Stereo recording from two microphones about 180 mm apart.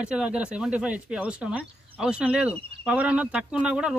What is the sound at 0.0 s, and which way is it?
A man's voice, 5° right (ahead or behind).